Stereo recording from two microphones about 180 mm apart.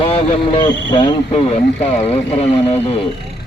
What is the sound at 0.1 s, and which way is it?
Speech, 30° left (ahead or behind).